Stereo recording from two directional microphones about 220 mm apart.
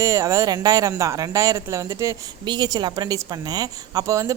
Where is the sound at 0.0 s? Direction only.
15° right (ahead or behind).